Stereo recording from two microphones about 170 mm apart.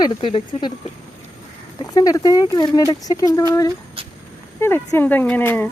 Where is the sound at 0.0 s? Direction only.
30° left (ahead or behind).